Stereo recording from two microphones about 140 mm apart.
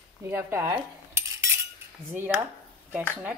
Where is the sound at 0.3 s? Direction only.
20° right (ahead or behind).